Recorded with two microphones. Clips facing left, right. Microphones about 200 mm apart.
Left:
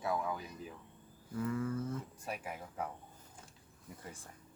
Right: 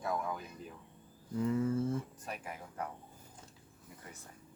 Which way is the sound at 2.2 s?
5° left (ahead or behind).